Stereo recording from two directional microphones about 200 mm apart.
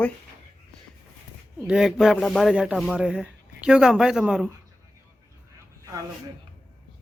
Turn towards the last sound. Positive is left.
turn(degrees=-15)  # may be behind; listen again after turning